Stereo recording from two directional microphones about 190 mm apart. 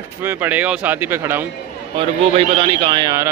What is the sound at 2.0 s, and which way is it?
Speech, 30° right (ahead or behind).